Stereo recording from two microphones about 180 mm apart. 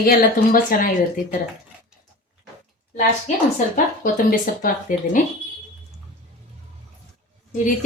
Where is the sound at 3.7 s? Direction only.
50° left (ahead or behind).